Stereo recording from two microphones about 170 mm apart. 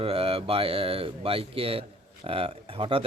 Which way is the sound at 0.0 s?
35° right (ahead or behind).